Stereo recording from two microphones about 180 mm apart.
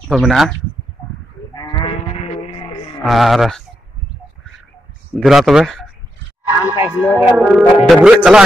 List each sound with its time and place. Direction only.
0.1 s speech: centre (ahead or behind)
1.5 s livestock: 20° left (ahead or behind)
3.0 s speech: centre (ahead or behind)
5.1 s speech: centre (ahead or behind)
6.4 s speech: 10° right (ahead or behind)
7.2 s music: 10° right (ahead or behind)
7.9 s speech: 5° right (ahead or behind)